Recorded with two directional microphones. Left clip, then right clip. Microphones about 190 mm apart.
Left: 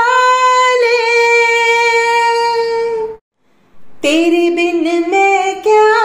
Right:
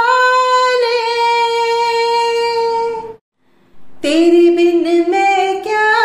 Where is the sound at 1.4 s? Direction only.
15° left (ahead or behind).